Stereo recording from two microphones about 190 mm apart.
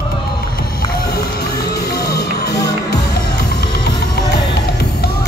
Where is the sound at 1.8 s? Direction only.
60° left (ahead or behind).